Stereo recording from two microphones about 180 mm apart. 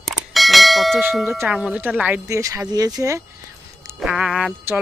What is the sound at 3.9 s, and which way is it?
Speech, 5° right (ahead or behind).